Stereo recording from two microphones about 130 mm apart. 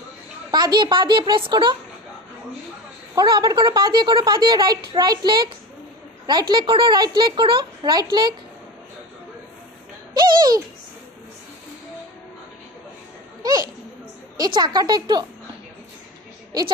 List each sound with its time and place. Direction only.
0.5 s a woman's voice: 35° right (ahead or behind)
3.2 s a woman's voice: 30° right (ahead or behind)
13.4 s a child's voice: 30° right (ahead or behind)